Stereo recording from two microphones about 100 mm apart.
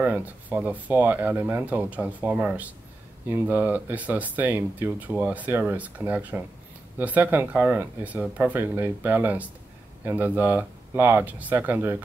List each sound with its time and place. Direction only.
0.0 s speech: 15° right (ahead or behind)